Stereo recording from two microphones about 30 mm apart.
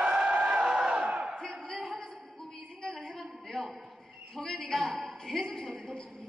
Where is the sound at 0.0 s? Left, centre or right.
Right.